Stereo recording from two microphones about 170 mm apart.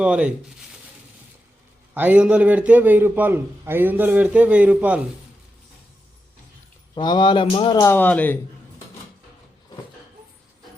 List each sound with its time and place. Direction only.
0.0 s speech: 5° right (ahead or behind)
1.9 s a man's voice: 10° right (ahead or behind)
6.9 s a man's voice: 25° left (ahead or behind); by 8.4 s 10° left (ahead or behind)